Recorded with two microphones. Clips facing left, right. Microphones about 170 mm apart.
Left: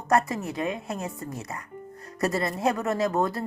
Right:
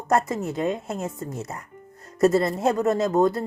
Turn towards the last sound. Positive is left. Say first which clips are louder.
# right 5 dB
turn(degrees=-20)  # may be behind; listen again after turning